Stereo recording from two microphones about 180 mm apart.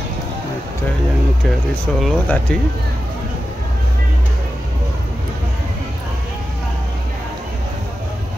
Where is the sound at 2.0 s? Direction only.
Centre (ahead or behind).